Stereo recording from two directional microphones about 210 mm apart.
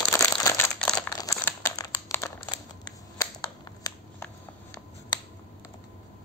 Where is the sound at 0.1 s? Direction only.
15° left (ahead or behind).